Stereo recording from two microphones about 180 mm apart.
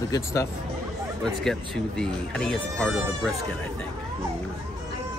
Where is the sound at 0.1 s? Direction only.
15° left (ahead or behind).